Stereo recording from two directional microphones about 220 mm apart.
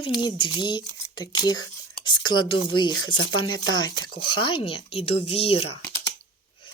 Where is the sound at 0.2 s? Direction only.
20° left (ahead or behind).